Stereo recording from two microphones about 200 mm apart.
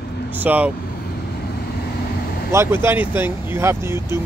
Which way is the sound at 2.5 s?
10° right (ahead or behind).